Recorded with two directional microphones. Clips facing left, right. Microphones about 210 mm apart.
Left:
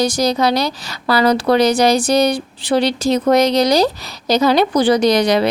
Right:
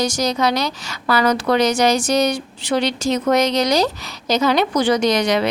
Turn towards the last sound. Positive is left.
turn(degrees=35)  # may be behind; listen again after turning